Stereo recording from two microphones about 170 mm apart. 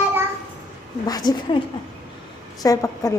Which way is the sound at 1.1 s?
25° left (ahead or behind).